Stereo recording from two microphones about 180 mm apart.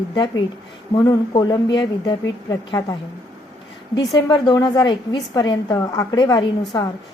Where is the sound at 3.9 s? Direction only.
25° left (ahead or behind).